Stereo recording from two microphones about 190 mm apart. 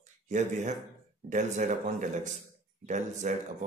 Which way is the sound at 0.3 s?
40° right (ahead or behind).